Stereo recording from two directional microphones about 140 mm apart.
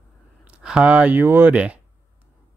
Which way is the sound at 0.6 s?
5° right (ahead or behind).